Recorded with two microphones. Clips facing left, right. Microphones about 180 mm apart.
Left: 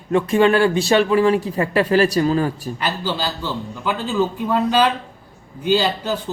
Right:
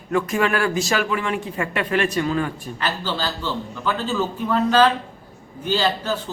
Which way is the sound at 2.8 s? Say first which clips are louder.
Left 1 dB; 15° left (ahead or behind).